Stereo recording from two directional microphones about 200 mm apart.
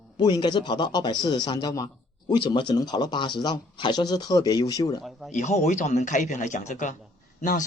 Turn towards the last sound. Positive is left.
turn(degrees=40)  # may be behind; listen again after turning